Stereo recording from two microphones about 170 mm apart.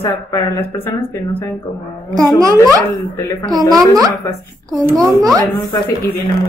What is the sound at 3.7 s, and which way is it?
A child's voice, 20° right (ahead or behind).